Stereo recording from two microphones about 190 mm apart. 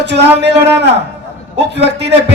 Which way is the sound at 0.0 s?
65° right (ahead or behind).